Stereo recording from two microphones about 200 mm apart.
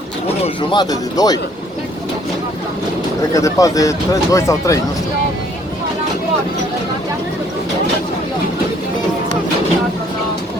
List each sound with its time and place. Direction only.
0.4 s speech: 20° left (ahead or behind)
3.3 s speech: 15° left (ahead or behind)